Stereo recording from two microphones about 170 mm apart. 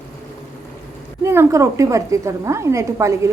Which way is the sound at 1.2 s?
15° right (ahead or behind).